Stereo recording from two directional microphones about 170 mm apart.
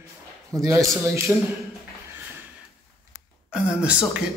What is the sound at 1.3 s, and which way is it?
Speech, 10° right (ahead or behind).